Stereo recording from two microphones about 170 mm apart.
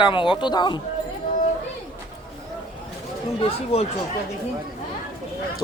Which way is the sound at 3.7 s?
35° left (ahead or behind).